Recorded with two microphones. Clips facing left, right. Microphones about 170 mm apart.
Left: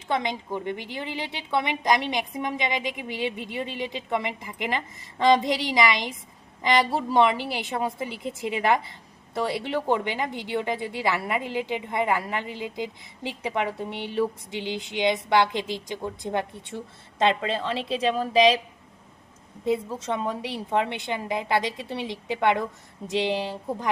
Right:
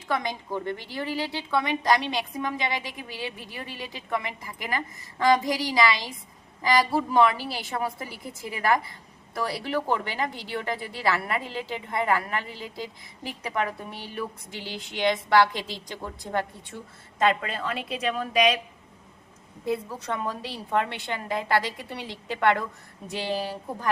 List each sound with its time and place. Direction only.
0.1 s a woman's voice: 20° left (ahead or behind)
19.6 s a woman's voice: 20° left (ahead or behind)